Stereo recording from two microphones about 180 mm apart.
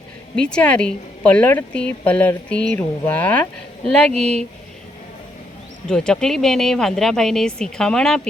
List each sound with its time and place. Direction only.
0.3 s a woman's voice: 5° left (ahead or behind)
4.1 s speech: 35° right (ahead or behind)
5.9 s speech: 5° left (ahead or behind)